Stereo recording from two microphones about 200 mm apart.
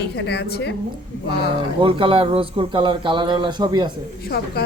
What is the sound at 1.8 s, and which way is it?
Speech, 25° right (ahead or behind).